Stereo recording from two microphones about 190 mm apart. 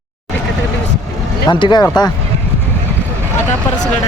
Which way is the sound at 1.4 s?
25° left (ahead or behind).